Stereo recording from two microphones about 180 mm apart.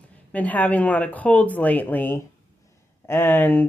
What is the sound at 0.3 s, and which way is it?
Speech, 10° left (ahead or behind).